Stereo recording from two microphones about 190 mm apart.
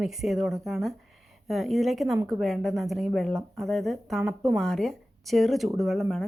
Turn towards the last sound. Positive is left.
turn(degrees=0)  # may be behind; listen again after turning